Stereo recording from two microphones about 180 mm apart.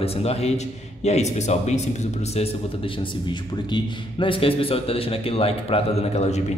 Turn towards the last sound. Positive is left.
turn(degrees=40)  # may be behind; listen again after turning